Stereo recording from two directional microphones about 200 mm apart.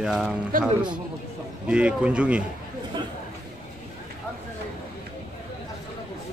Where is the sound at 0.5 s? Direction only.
45° right (ahead or behind).